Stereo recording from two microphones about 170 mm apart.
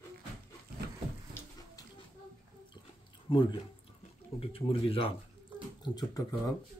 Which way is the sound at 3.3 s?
30° left (ahead or behind).